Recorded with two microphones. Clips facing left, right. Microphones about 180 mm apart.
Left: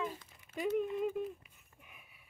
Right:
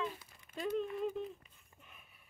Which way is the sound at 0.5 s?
10° left (ahead or behind).